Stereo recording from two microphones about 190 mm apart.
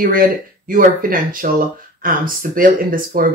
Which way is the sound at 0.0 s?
45° right (ahead or behind).